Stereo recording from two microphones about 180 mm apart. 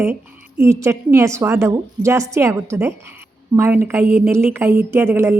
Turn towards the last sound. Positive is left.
turn(degrees=-15)  # may be behind; listen again after turning